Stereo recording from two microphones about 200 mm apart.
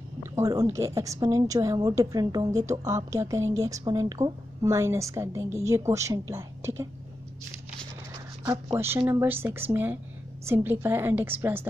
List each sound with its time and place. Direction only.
0.2 s a woman's voice: 15° right (ahead or behind)
8.7 s a woman's voice: 10° right (ahead or behind)